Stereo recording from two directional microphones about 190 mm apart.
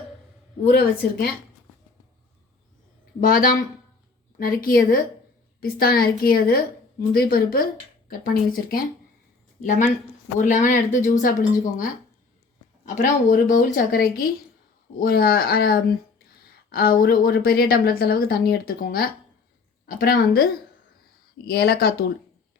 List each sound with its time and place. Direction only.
0.7 s a woman's voice: 60° left (ahead or behind)
3.2 s a woman's voice: 50° left (ahead or behind)